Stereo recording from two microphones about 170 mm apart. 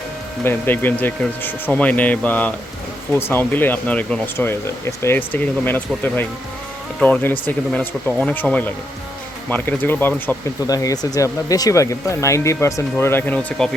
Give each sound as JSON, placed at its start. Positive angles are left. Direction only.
{"t": 0.4, "sound": "speech", "side_deg": 10}